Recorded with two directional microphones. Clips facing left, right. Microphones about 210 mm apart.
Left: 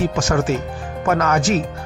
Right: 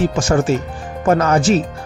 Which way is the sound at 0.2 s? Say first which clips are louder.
Right 3 dB; 30° right (ahead or behind).